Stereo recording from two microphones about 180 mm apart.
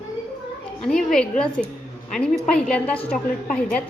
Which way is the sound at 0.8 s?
5° left (ahead or behind).